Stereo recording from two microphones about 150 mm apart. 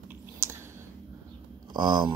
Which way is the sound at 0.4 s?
15° right (ahead or behind).